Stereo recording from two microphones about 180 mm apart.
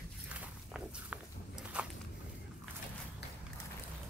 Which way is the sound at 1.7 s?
5° right (ahead or behind).